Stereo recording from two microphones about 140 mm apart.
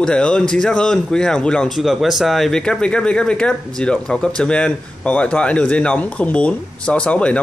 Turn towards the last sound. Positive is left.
turn(degrees=10)  # may be behind; listen again after turning